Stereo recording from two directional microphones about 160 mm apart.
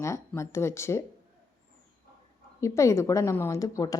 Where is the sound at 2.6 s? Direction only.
20° left (ahead or behind).